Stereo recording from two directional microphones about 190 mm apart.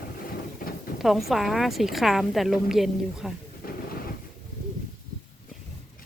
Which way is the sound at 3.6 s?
50° left (ahead or behind).